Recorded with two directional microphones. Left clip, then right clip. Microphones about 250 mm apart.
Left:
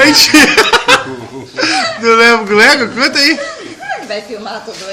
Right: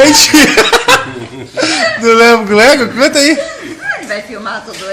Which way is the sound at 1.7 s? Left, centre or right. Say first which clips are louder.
Right 2 dB; right.